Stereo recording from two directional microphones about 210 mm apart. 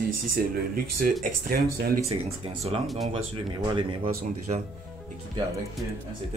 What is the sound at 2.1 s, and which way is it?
Speech, 30° right (ahead or behind).